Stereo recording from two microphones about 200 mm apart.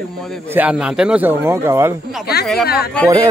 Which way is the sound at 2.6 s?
50° left (ahead or behind).